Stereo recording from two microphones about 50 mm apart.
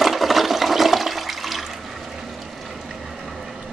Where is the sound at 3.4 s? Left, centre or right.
Centre.